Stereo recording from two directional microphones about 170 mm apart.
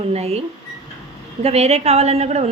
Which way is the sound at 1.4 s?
40° right (ahead or behind).